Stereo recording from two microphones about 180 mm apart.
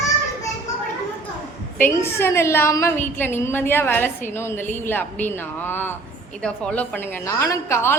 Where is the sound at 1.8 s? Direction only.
15° left (ahead or behind).